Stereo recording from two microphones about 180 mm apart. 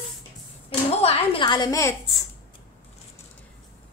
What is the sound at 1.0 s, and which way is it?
Speech, 30° left (ahead or behind).